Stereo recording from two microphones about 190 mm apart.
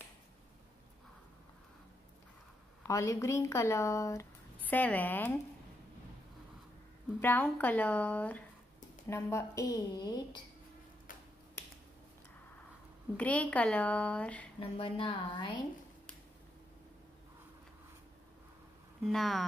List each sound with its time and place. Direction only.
2.8 s speech: 15° left (ahead or behind)
7.2 s a woman's voice: 10° left (ahead or behind)
13.2 s speech: 5° left (ahead or behind)
14.6 s a woman's voice: 30° left (ahead or behind)
19.0 s speech: centre (ahead or behind)